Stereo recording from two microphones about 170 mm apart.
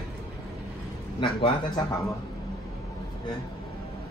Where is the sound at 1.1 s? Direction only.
30° left (ahead or behind).